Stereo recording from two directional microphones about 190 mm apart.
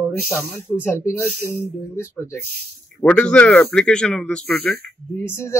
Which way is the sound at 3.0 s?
5° left (ahead or behind).